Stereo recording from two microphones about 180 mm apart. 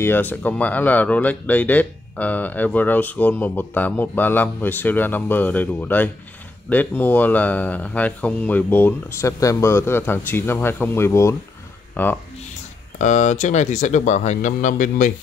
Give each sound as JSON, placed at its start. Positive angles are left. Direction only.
{"t": 0.0, "sound": "speech", "side_deg": 10}
{"t": 13.0, "sound": "a man's voice", "side_deg": 40}